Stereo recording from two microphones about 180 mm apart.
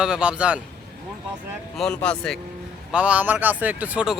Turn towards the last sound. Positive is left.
turn(degrees=-5)  # may be behind; listen again after turning